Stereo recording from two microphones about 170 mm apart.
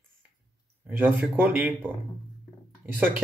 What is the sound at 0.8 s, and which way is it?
Speech, 10° right (ahead or behind).